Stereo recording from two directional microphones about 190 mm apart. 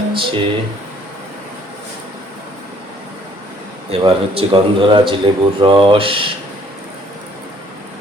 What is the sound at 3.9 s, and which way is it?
Speech, 30° right (ahead or behind).